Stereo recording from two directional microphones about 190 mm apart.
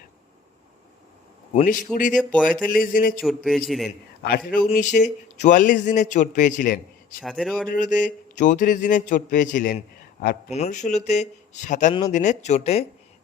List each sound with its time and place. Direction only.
1.6 s a man's voice: 45° left (ahead or behind)
2.1 s a man's voice: centre (ahead or behind)
2.6 s a man's voice: 50° left (ahead or behind)
3.2 s a man's voice: centre (ahead or behind)
3.8 s speech: 55° left (ahead or behind)
7.2 s a man's voice: centre (ahead or behind)
7.7 s a man's voice: 40° left (ahead or behind)